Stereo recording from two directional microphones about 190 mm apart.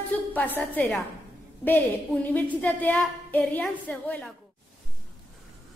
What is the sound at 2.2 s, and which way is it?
A woman's voice, 10° left (ahead or behind).